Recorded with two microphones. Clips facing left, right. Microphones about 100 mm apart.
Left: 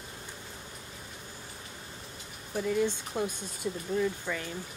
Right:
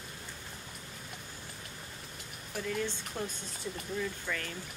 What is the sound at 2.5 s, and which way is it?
Speech, 20° left (ahead or behind).